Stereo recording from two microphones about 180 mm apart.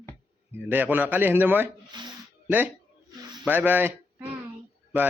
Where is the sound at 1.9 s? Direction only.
25° right (ahead or behind).